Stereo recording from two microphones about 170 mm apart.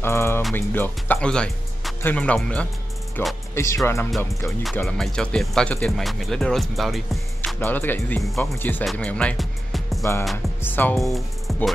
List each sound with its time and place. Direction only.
0.0 s music: 15° left (ahead or behind)
0.6 s speech: 10° left (ahead or behind)
4.8 s speech: centre (ahead or behind)
7.4 s speech: 10° left (ahead or behind)
11.0 s speech: centre (ahead or behind)